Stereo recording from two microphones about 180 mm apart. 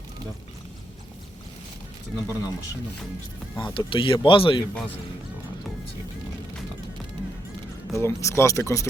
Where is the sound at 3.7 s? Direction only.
30° left (ahead or behind).